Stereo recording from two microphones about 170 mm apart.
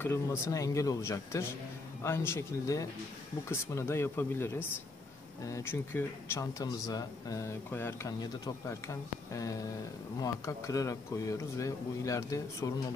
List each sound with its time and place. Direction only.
0.0 s a man's voice: 15° left (ahead or behind)